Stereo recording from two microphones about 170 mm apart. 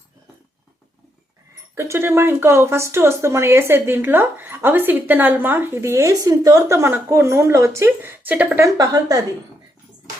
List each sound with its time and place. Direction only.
1.7 s speech: 15° right (ahead or behind)